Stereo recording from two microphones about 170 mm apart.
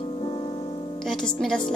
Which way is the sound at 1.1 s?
5° left (ahead or behind).